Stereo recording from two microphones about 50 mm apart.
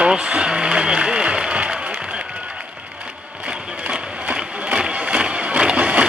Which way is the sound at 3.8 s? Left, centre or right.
Right.